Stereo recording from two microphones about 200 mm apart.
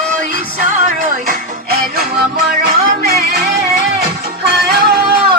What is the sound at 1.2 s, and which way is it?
Music, 50° right (ahead or behind).